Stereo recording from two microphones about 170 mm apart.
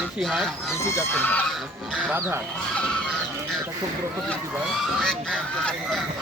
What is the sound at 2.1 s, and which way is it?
Speech, 15° right (ahead or behind).